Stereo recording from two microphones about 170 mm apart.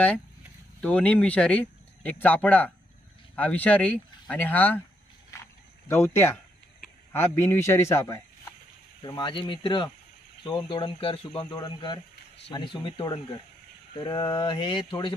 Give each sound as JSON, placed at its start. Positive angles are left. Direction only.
{"t": 0.7, "sound": "speech", "side_deg": 5}
{"t": 5.3, "sound": "a sound", "side_deg": 20}
{"t": 5.9, "sound": "speech", "side_deg": 15}
{"t": 9.0, "sound": "speech", "side_deg": 25}